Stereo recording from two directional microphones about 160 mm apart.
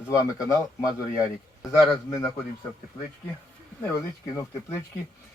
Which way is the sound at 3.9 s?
20° left (ahead or behind).